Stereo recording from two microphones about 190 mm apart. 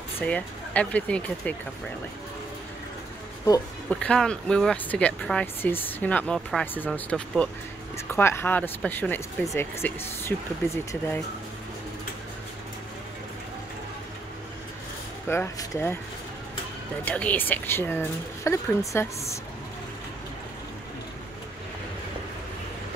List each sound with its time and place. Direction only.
0.2 s speech: 5° left (ahead or behind)
3.9 s speech: 5° left (ahead or behind)
15.2 s speech: 15° left (ahead or behind)
17.0 s speech: 5° left (ahead or behind)